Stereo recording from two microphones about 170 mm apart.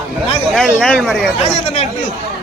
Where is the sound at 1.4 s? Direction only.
40° left (ahead or behind).